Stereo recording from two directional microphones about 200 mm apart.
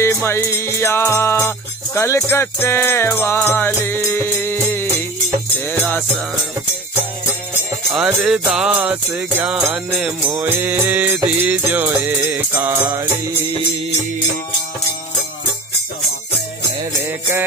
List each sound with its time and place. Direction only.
0.0 s music: 15° left (ahead or behind)
7.9 s music: centre (ahead or behind)